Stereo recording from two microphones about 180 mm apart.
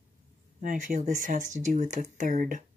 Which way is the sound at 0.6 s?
45° right (ahead or behind).